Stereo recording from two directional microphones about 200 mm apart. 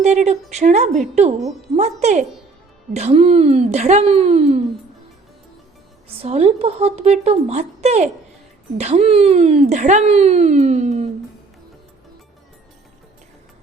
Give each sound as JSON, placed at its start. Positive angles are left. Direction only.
{"t": 0.0, "sound": "speech", "side_deg": -35}
{"t": 6.1, "sound": "speech", "side_deg": -30}